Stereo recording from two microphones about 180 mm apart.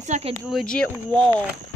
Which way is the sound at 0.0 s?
40° right (ahead or behind).